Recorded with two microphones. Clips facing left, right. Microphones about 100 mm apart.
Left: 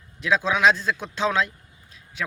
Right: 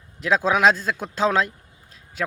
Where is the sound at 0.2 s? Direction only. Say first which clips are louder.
Right 2 dB; 40° right (ahead or behind).